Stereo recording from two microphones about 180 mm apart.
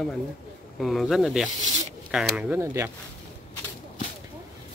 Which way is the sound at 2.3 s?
10° right (ahead or behind).